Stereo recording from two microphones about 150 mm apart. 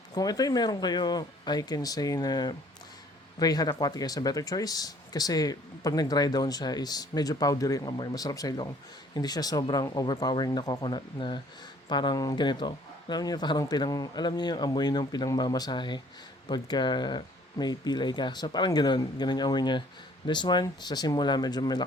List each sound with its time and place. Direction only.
0.1 s speech: 25° left (ahead or behind)